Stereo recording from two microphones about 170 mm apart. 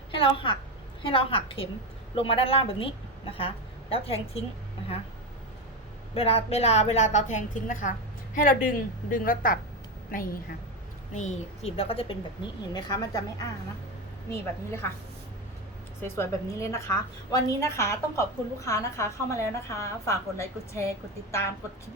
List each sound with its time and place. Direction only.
0.1 s a sound: 30° left (ahead or behind)
1.0 s a woman's voice: 30° left (ahead or behind)
6.1 s a woman's voice: 35° left (ahead or behind); by 9.6 s 55° left (ahead or behind)
11.1 s a woman's voice: 45° left (ahead or behind)
12.7 s a woman's voice: 25° left (ahead or behind)
14.3 s a woman's voice: 15° left (ahead or behind)
16.0 s a woman's voice: 15° left (ahead or behind)